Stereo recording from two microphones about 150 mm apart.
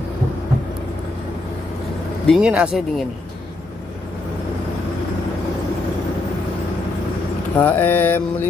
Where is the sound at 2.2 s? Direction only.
Centre (ahead or behind).